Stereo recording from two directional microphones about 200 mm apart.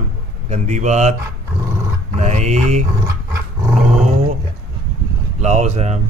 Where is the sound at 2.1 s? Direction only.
35° right (ahead or behind).